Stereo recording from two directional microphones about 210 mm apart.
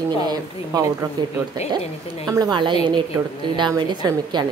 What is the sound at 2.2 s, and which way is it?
A woman's voice, 15° right (ahead or behind).